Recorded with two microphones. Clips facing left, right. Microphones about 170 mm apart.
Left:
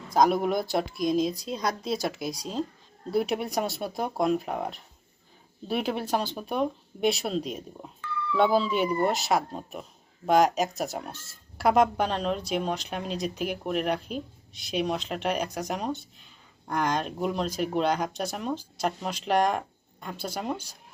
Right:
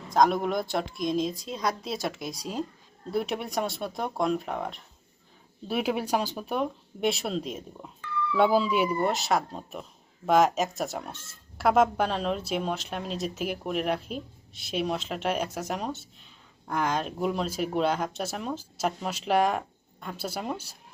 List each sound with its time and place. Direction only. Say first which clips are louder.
0.1 s speech: left 1 dB; 5° left (ahead or behind)